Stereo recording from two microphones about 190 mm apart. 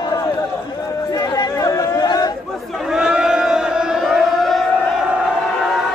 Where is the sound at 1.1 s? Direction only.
20° left (ahead or behind).